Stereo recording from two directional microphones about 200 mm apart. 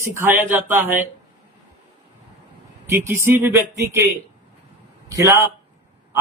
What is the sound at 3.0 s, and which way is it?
Speech, 10° right (ahead or behind).